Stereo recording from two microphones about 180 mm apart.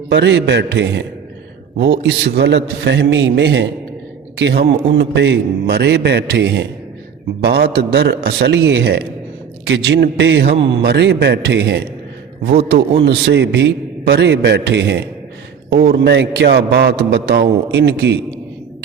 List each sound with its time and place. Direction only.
0.1 s a man's voice: 75° right (ahead or behind)